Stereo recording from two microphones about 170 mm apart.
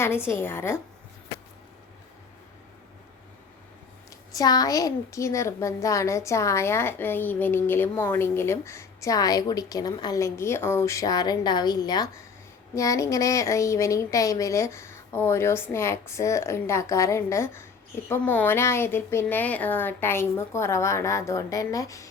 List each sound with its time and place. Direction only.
0.0 s a woman's voice: 15° left (ahead or behind)
4.4 s a woman's voice: 20° left (ahead or behind)